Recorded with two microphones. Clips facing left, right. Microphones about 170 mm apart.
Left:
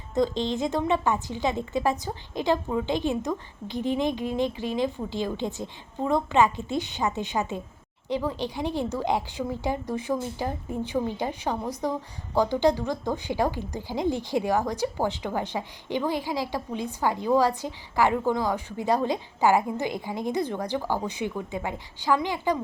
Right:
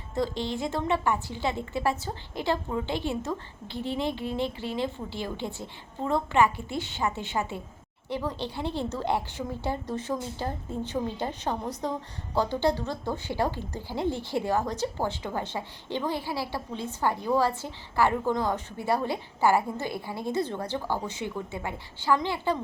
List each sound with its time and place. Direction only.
0.1 s a woman's voice: 20° left (ahead or behind)